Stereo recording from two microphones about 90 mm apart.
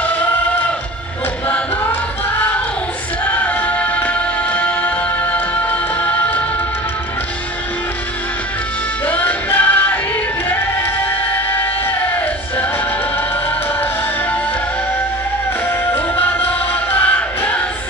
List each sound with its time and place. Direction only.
1.5 s music: 20° left (ahead or behind)
3.3 s music: 15° left (ahead or behind)
9.0 s music: 15° left (ahead or behind)
11.3 s a sound: 25° left (ahead or behind)
15.8 s music: 25° left (ahead or behind)